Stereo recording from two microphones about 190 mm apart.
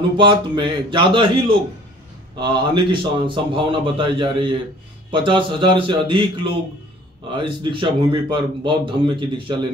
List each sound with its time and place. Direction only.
0.2 s speech: 25° right (ahead or behind)